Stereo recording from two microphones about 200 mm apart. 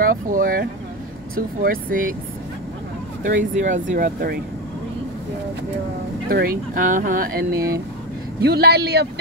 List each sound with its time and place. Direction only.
0.0 s speech: 45° right (ahead or behind)
3.3 s speech: 40° right (ahead or behind)
6.2 s speech: 45° right (ahead or behind)
7.5 s speech: 15° right (ahead or behind)
8.4 s a man's voice: 55° right (ahead or behind)